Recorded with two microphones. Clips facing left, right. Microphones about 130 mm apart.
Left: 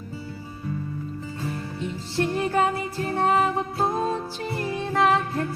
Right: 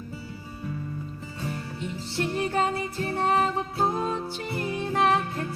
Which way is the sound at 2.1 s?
30° left (ahead or behind).